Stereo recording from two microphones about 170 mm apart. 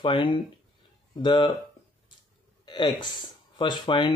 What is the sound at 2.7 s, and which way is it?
Speech, 25° left (ahead or behind).